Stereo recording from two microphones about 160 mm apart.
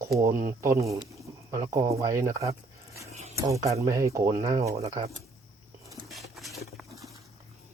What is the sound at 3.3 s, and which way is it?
Speech, 20° right (ahead or behind).